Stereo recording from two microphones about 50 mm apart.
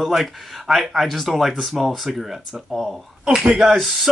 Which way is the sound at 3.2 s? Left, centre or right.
Right.